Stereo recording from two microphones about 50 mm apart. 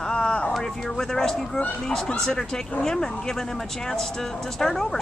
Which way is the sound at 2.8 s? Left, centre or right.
Centre.